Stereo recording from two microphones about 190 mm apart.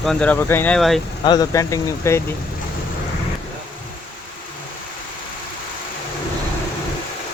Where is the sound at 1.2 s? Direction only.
20° left (ahead or behind).